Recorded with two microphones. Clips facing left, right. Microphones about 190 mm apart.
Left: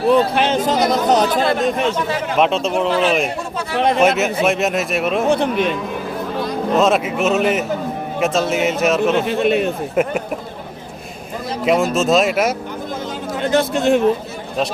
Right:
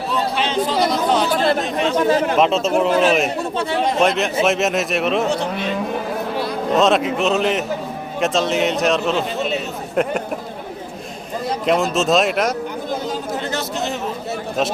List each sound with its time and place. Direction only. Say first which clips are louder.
0.1 s speech: left 6 dB; 55° left (ahead or behind)
2.0 s speech: right 6 dB; 45° right (ahead or behind)
2.4 s speech: right 1 dB; centre (ahead or behind)
3.8 s a man's voice: left 5 dB; 60° left (ahead or behind)
4.2 s speech: left 1 dB; centre (ahead or behind)
5.3 s a man's voice: left 5 dB; 55° left (ahead or behind)
6.7 s speech: even; centre (ahead or behind)
9.1 s a man's voice: left 5 dB; 60° left (ahead or behind)
11.6 s speech: left 3 dB; centre (ahead or behind)
13.4 s speech: left 7 dB; 55° left (ahead or behind)